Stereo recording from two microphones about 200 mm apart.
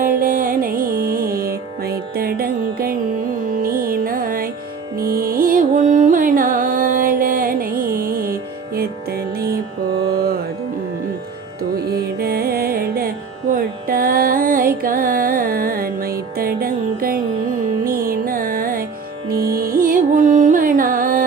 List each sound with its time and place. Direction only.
0.0 s music: 45° right (ahead or behind)
3.6 s carnatic music: 45° right (ahead or behind)
4.9 s music: 45° right (ahead or behind)
11.9 s music: 50° right (ahead or behind)